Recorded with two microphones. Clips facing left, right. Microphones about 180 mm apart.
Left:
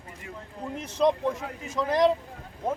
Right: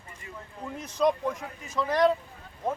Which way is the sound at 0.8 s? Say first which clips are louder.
Left 2 dB; 25° left (ahead or behind).